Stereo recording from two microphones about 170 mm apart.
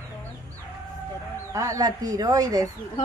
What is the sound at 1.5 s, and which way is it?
A woman's voice, 20° right (ahead or behind).